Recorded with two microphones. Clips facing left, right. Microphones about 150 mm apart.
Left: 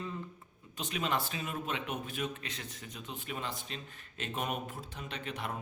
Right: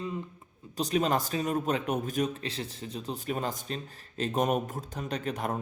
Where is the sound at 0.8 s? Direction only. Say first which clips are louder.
Right 7 dB; 40° right (ahead or behind).